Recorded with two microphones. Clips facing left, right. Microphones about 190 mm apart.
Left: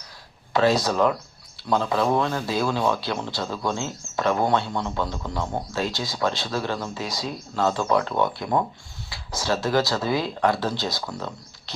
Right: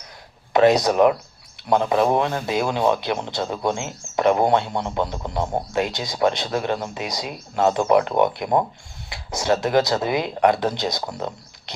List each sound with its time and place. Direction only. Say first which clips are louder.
0.5 s speech: right 5 dB; 20° right (ahead or behind)